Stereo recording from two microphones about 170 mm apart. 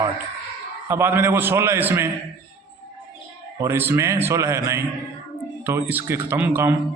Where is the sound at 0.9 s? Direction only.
15° right (ahead or behind).